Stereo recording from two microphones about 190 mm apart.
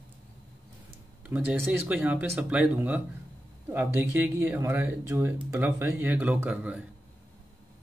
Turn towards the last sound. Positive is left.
turn(degrees=-5)  # may be behind; listen again after turning